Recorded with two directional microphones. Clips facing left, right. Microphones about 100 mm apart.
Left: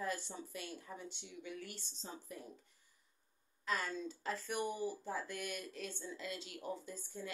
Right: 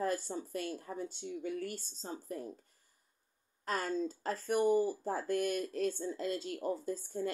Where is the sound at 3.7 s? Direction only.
40° right (ahead or behind).